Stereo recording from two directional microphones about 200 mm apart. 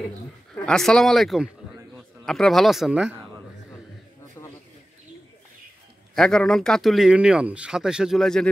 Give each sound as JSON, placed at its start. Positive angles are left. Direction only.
{"t": 0.7, "sound": "speech", "side_deg": 0}
{"t": 4.4, "sound": "bird", "side_deg": 15}
{"t": 6.1, "sound": "speech", "side_deg": 0}